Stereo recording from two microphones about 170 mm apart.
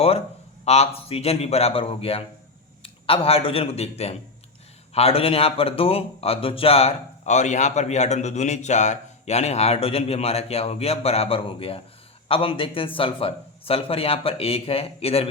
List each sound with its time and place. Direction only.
0.6 s speech: 40° left (ahead or behind)